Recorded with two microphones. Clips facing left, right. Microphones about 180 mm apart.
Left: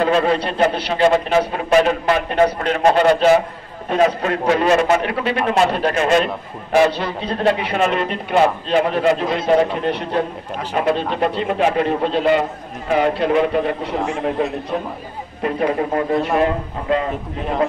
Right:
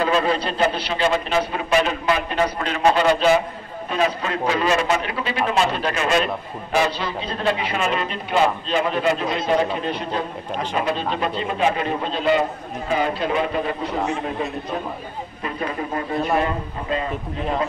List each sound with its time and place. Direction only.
0.0 s a man's voice: 60° left (ahead or behind)
15.4 s a man's voice: 55° left (ahead or behind)
16.9 s a man's voice: 75° left (ahead or behind)